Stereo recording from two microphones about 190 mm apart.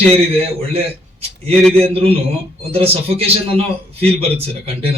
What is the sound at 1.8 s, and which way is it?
Speech, 30° right (ahead or behind).